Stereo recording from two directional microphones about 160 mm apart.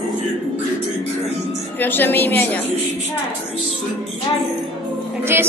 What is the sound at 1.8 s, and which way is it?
Speech, 10° left (ahead or behind).